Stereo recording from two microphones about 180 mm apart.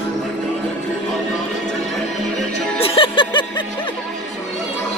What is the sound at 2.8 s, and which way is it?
Music, 30° left (ahead or behind).